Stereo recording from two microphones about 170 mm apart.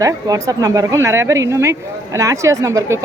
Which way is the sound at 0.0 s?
20° right (ahead or behind).